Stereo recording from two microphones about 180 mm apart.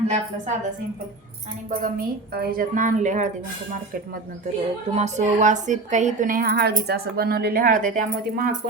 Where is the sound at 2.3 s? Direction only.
60° right (ahead or behind).